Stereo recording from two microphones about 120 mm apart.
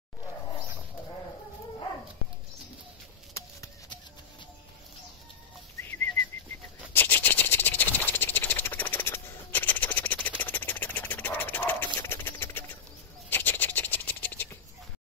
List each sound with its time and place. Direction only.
5.8 s whistling: 20° left (ahead or behind)
6.9 s rattle: 15° left (ahead or behind)
13.3 s scratch: 15° left (ahead or behind)